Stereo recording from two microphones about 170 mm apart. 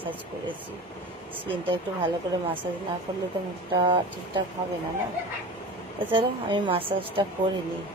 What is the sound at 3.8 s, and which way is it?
Speech, 25° right (ahead or behind).